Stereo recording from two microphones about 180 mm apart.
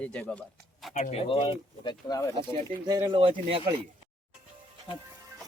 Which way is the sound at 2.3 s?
20° right (ahead or behind).